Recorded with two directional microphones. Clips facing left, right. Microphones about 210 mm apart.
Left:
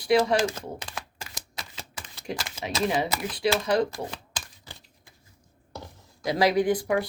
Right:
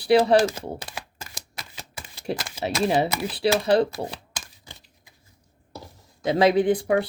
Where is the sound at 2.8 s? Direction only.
30° right (ahead or behind).